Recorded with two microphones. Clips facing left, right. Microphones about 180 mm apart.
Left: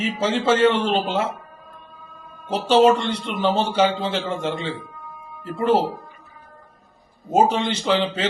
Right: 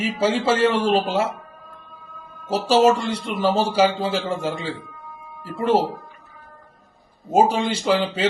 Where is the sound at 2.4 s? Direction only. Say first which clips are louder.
Left 1 dB; 5° right (ahead or behind).